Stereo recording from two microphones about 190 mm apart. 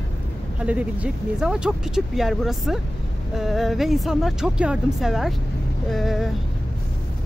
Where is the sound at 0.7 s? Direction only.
5° right (ahead or behind).